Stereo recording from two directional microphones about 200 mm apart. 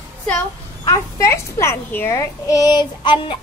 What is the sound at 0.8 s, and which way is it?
A child's voice, 15° left (ahead or behind).